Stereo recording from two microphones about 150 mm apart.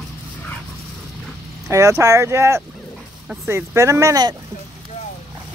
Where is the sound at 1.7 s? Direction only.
20° right (ahead or behind).